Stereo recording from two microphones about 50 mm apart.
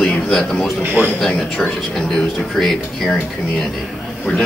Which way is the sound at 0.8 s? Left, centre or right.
Right.